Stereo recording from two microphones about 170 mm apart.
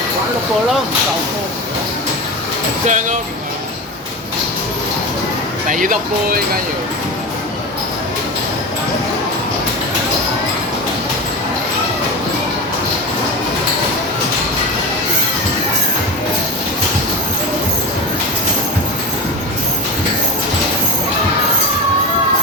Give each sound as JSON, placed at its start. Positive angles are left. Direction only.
{"t": 2.8, "sound": "speech", "side_deg": -45}
{"t": 5.6, "sound": "speech", "side_deg": -50}